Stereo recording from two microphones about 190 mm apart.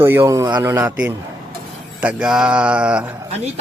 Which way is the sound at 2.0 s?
5° right (ahead or behind).